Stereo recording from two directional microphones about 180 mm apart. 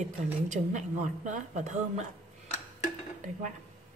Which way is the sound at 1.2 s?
40° right (ahead or behind).